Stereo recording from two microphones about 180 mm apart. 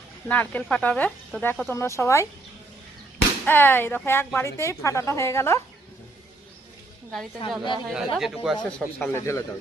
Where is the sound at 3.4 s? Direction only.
10° left (ahead or behind).